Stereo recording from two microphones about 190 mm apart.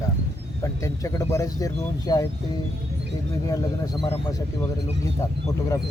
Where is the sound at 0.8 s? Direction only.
15° left (ahead or behind).